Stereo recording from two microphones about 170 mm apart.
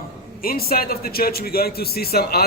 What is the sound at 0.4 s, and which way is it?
A man's voice, 60° left (ahead or behind).